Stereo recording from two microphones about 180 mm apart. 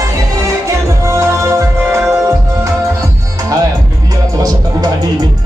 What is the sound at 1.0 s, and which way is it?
Music, 15° right (ahead or behind).